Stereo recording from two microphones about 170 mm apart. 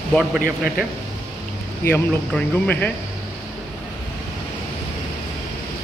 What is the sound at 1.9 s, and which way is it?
Speech, 10° left (ahead or behind).